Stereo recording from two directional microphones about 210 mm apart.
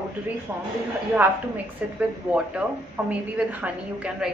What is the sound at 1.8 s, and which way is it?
Speech, 5° right (ahead or behind).